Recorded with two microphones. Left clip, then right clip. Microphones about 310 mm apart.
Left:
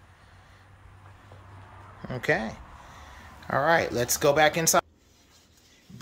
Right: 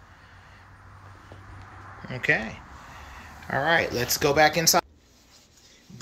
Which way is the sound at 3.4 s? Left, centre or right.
Centre.